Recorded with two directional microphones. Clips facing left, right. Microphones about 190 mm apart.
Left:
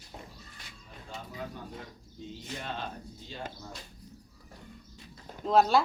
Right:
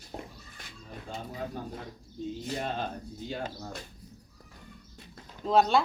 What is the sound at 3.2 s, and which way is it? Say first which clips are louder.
Speech: right 6 dB; 60° right (ahead or behind).